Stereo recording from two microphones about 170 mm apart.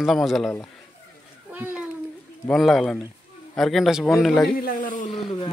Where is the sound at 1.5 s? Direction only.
10° right (ahead or behind).